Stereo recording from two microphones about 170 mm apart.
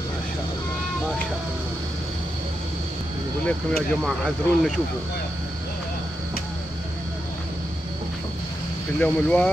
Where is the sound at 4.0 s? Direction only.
Centre (ahead or behind).